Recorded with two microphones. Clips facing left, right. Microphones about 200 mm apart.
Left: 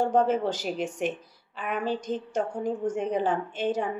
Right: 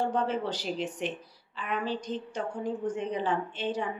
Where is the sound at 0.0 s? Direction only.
45° left (ahead or behind).